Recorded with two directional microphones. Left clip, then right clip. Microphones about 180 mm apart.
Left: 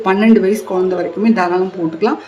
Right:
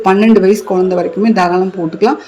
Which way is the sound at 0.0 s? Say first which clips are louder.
Right 3 dB; 15° right (ahead or behind).